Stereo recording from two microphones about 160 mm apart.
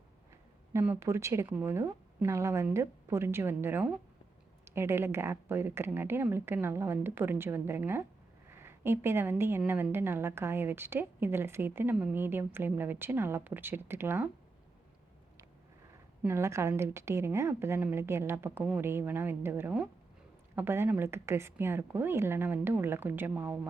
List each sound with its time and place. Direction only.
0.7 s a woman's voice: 15° right (ahead or behind)
16.2 s a woman's voice: 15° right (ahead or behind)